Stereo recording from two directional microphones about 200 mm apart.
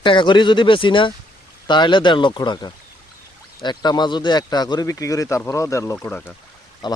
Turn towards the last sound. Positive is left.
turn(degrees=20)  # may be behind; listen again after turning